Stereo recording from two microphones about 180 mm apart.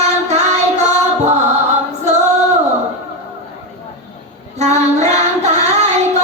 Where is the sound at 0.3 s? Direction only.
40° right (ahead or behind).